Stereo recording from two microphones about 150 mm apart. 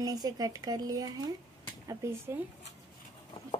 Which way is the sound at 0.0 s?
25° right (ahead or behind).